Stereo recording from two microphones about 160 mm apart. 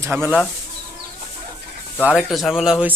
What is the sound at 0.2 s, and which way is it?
Speech, 10° right (ahead or behind).